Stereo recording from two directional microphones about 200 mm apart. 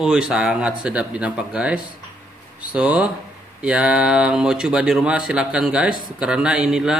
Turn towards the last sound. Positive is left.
turn(degrees=-5)  # may be behind; listen again after turning